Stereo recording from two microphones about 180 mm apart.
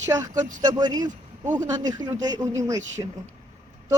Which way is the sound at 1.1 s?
45° right (ahead or behind).